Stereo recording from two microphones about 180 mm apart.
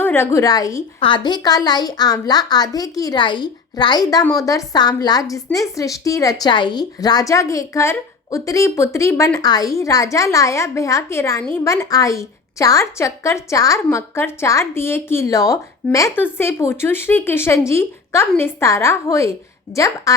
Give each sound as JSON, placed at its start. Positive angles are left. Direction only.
{"t": 0.0, "sound": "a woman's voice", "side_deg": 15}